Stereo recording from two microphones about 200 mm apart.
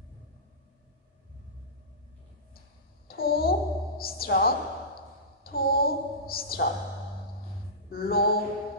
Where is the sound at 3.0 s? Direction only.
50° left (ahead or behind).